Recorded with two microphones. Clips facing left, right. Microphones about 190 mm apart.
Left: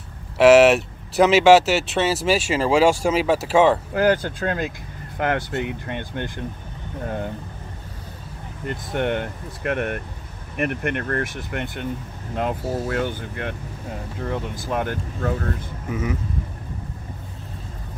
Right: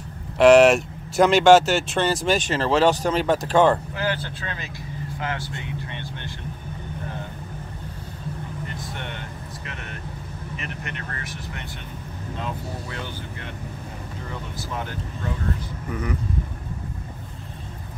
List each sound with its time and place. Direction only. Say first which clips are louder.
0.4 s speech: left 1 dB; 5° left (ahead or behind)
3.9 s speech: left 8 dB; 45° left (ahead or behind)
8.6 s speech: left 10 dB; 55° left (ahead or behind)
15.9 s speech: left 3 dB; 5° left (ahead or behind)